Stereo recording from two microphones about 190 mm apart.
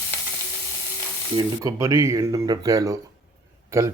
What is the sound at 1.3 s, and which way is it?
Speech, 15° right (ahead or behind).